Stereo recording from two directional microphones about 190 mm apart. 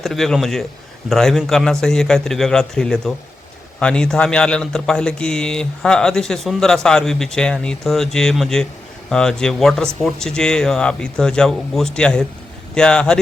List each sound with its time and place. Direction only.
0.0 s speech: centre (ahead or behind)